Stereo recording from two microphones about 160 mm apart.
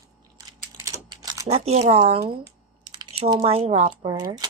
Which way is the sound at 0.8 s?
25° right (ahead or behind).